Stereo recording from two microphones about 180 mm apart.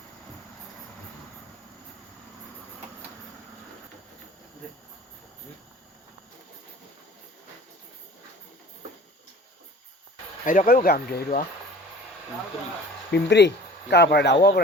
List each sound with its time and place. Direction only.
10.4 s speech: 45° left (ahead or behind)
10.8 s speech: 60° left (ahead or behind)
13.1 s speech: 75° left (ahead or behind)